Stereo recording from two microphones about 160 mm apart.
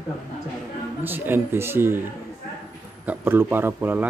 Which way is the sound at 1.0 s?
15° right (ahead or behind).